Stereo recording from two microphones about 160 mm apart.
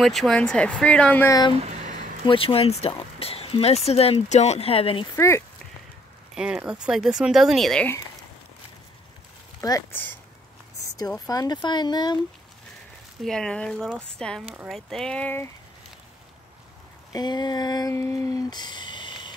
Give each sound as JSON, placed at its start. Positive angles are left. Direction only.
{"t": 0.0, "sound": "speech", "side_deg": 0}
{"t": 1.2, "sound": "speech", "side_deg": 20}
{"t": 1.5, "sound": "a sound", "side_deg": -40}
{"t": 2.2, "sound": "speech", "side_deg": 35}
{"t": 5.1, "sound": "speech", "side_deg": 15}
{"t": 6.3, "sound": "speech", "side_deg": -5}
{"t": 9.6, "sound": "speech", "side_deg": 20}
{"t": 13.2, "sound": "speech", "side_deg": 5}
{"t": 17.1, "sound": "speech", "side_deg": 25}